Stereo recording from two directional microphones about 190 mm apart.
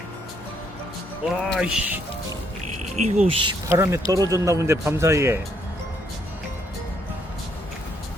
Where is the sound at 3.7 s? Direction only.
10° right (ahead or behind).